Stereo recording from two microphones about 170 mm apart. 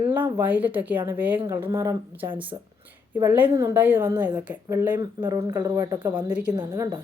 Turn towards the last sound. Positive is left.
turn(degrees=-25)  # may be behind; listen again after turning